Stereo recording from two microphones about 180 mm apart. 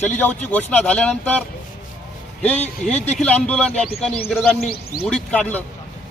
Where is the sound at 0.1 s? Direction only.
10° left (ahead or behind).